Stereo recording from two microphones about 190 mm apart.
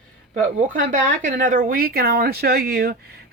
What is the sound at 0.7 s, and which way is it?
A woman's voice, 40° right (ahead or behind).